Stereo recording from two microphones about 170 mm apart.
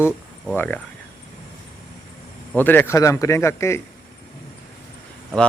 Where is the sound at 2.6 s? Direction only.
10° left (ahead or behind).